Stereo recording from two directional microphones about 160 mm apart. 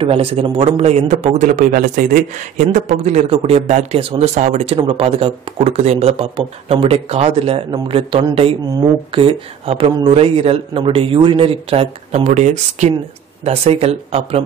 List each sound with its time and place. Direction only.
0.0 s a man's voice: 35° right (ahead or behind)